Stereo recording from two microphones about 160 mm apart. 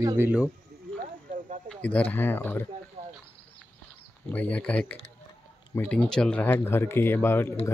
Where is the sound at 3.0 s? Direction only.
40° right (ahead or behind).